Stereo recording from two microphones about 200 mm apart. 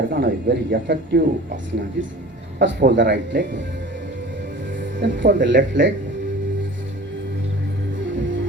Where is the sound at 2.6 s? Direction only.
60° right (ahead or behind).